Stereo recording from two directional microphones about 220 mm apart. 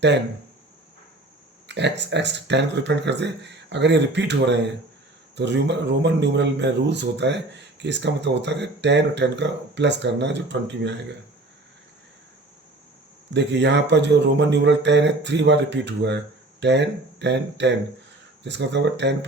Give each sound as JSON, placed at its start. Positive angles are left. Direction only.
{"t": 1.6, "sound": "speech", "side_deg": -50}
{"t": 13.3, "sound": "speech", "side_deg": -50}